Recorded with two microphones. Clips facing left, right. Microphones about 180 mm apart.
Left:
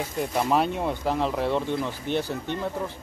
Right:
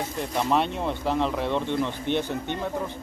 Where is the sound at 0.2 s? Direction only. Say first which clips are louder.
Left 1 dB; 5° left (ahead or behind).